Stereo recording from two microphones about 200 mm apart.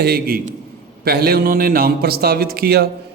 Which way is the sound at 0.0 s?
50° right (ahead or behind).